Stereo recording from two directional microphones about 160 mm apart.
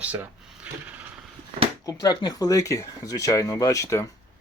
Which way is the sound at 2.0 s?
25° left (ahead or behind).